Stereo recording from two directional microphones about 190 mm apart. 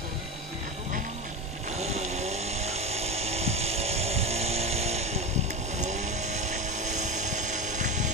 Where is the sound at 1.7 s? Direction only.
35° right (ahead or behind).